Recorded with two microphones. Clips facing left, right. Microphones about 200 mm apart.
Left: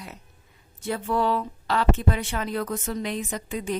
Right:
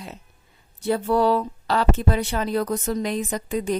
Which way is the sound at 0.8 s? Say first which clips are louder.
Right 5 dB; 35° right (ahead or behind).